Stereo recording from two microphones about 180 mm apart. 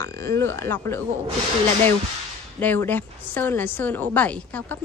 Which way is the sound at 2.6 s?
10° left (ahead or behind).